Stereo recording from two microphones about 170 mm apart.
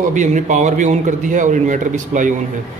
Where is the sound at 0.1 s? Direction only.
45° right (ahead or behind).